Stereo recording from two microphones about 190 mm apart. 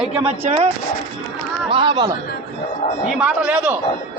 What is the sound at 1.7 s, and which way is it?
Speech, 25° right (ahead or behind).